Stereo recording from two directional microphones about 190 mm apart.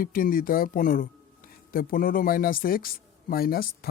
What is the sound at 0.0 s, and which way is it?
Speech, 50° left (ahead or behind).